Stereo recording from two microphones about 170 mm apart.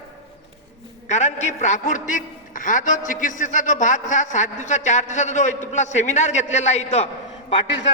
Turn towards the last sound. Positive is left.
turn(degrees=35)  # may be behind; listen again after turning